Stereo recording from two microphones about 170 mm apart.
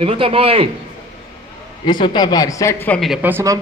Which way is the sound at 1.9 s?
25° left (ahead or behind).